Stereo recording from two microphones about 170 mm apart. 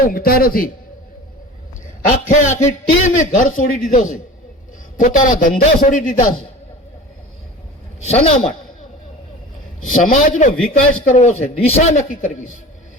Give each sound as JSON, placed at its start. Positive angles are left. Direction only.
{"t": 0.0, "sound": "speech", "side_deg": 60}
{"t": 2.0, "sound": "a man's voice", "side_deg": 50}
{"t": 8.0, "sound": "a woman's voice", "side_deg": 40}
{"t": 9.9, "sound": "a man's voice", "side_deg": 50}